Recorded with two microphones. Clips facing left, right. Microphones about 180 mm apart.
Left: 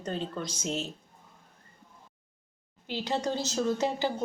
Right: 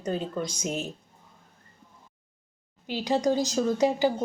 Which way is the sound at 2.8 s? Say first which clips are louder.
Right 6 dB; 15° right (ahead or behind).